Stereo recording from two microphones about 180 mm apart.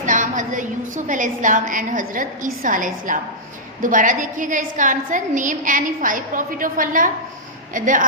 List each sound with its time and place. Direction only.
0.0 s a woman's voice: 45° right (ahead or behind)